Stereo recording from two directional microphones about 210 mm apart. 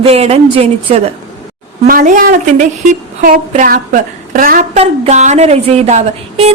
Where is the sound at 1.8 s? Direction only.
40° right (ahead or behind).